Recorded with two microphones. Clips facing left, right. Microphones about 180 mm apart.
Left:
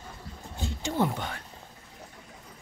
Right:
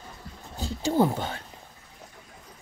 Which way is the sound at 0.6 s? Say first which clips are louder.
Right 5 dB; 35° right (ahead or behind).